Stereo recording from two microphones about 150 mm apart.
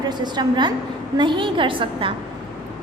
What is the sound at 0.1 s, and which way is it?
A woman's voice, 30° right (ahead or behind).